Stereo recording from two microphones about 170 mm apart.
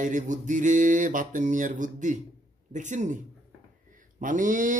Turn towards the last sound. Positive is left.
turn(degrees=-50)  # may be behind; listen again after turning